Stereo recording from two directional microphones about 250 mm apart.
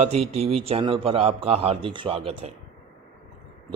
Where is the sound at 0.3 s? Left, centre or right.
Right.